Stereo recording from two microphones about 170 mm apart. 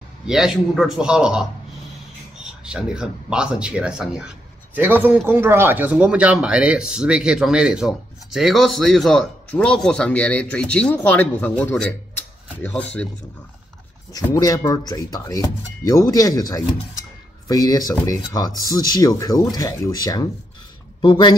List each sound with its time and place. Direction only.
0.3 s speech: 5° right (ahead or behind)
14.2 s speech: 20° left (ahead or behind)